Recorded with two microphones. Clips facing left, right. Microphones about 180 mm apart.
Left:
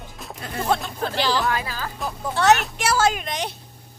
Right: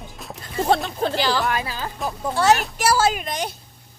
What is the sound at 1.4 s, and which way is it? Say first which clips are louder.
Speech: right 1 dB; 20° right (ahead or behind).